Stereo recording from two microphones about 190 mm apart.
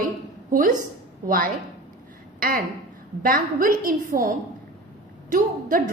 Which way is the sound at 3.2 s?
45° right (ahead or behind).